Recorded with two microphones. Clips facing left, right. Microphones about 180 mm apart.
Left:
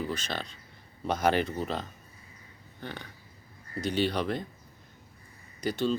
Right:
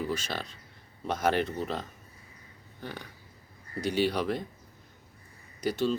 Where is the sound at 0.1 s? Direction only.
10° right (ahead or behind).